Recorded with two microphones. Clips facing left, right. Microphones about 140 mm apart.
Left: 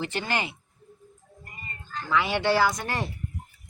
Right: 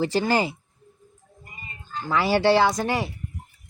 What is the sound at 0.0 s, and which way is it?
Speech, 35° right (ahead or behind).